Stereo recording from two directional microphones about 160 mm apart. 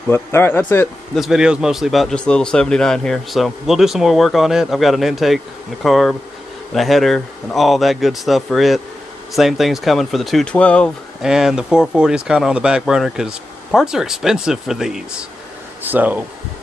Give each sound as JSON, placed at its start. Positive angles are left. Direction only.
{"t": 0.1, "sound": "speech", "side_deg": 15}
{"t": 1.1, "sound": "a man's voice", "side_deg": 0}
{"t": 11.2, "sound": "a man's voice", "side_deg": -5}